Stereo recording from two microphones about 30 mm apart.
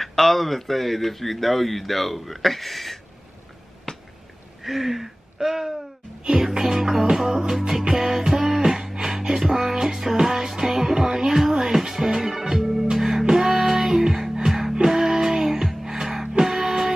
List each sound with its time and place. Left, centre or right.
0.0 s speech: centre
3.9 s finger snapping: left
4.6 s speech: centre
6.6 s music: centre
8.4 s beatboxing: centre
9.5 s music: centre
12.2 s organ: centre
12.4 s music: centre